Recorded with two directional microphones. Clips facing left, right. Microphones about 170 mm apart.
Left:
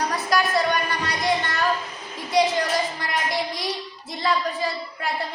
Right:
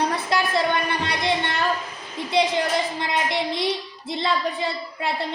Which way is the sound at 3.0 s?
25° right (ahead or behind).